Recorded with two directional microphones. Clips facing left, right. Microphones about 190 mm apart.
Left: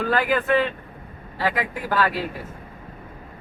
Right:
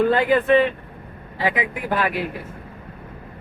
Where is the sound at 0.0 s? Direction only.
25° right (ahead or behind).